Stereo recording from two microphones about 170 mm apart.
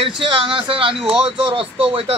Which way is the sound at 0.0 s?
30° right (ahead or behind).